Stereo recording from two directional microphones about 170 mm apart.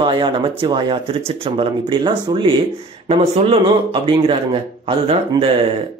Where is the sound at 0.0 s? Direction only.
25° right (ahead or behind).